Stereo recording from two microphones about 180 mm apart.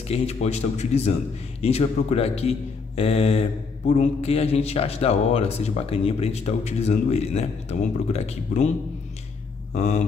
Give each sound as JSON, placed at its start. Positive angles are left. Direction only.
{"t": 0.1, "sound": "a man's voice", "side_deg": 35}
{"t": 9.8, "sound": "a man's voice", "side_deg": 40}